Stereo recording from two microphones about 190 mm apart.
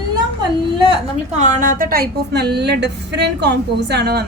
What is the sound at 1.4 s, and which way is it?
A woman's voice, 40° right (ahead or behind).